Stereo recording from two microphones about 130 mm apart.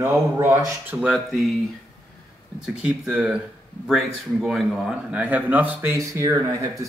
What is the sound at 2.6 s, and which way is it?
A man's voice, 10° right (ahead or behind).